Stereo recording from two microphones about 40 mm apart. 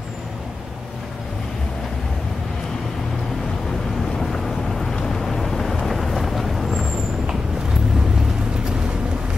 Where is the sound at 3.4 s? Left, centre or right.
Centre.